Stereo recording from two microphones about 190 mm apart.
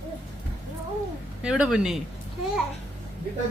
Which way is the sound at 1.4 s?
5° right (ahead or behind).